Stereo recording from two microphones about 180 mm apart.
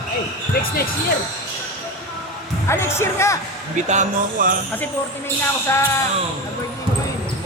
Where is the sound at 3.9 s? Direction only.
45° right (ahead or behind).